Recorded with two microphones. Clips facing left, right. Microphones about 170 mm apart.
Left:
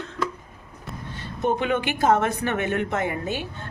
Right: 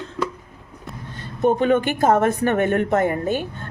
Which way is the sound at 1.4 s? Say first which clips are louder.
Right 6 dB; 45° right (ahead or behind).